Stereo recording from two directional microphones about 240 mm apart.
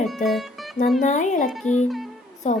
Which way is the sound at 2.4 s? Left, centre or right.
Left.